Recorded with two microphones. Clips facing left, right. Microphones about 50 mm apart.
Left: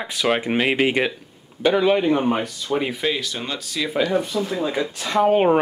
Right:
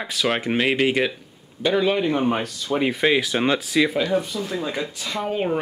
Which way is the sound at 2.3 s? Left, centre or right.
Centre.